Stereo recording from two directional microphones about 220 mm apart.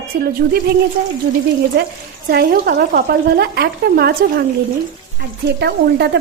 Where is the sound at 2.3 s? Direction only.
45° right (ahead or behind).